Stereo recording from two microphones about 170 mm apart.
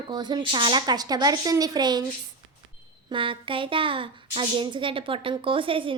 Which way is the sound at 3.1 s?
30° right (ahead or behind).